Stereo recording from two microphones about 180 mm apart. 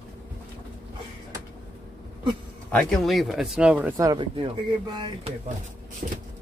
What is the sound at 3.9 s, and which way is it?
Speech, 20° right (ahead or behind).